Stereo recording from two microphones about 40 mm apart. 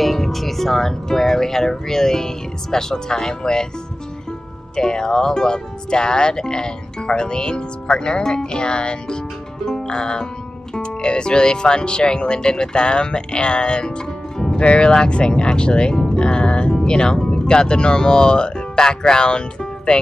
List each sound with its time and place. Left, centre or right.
0.0 s speech: centre
4.7 s speech: centre
9.7 s music: centre
10.7 s speech: left